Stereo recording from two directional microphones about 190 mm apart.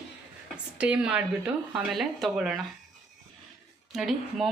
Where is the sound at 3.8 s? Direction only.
Centre (ahead or behind).